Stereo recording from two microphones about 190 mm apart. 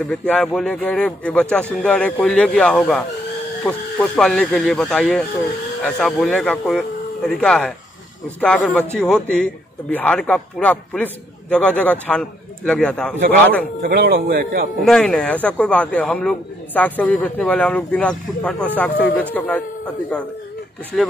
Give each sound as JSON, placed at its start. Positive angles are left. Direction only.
{"t": 0.0, "sound": "speech", "side_deg": 5}
{"t": 13.8, "sound": "speech", "side_deg": -50}
{"t": 14.9, "sound": "a man's voice", "side_deg": 5}